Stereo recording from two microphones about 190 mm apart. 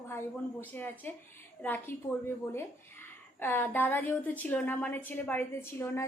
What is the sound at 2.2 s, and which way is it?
A woman's voice, 15° left (ahead or behind).